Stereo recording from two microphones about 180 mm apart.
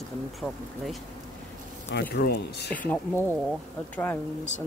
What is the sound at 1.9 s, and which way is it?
Speech, 60° left (ahead or behind).